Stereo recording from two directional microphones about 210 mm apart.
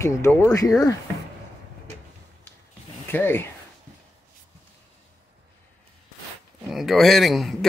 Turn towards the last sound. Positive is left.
turn(degrees=0)  # may be behind; listen again after turning